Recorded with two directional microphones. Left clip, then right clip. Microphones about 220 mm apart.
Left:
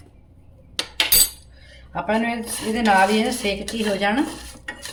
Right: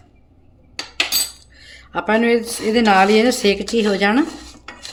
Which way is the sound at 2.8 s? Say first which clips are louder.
Right 4 dB; 55° right (ahead or behind).